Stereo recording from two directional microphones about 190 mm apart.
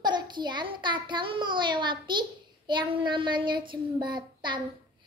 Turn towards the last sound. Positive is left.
turn(degrees=-25)  # may be behind; listen again after turning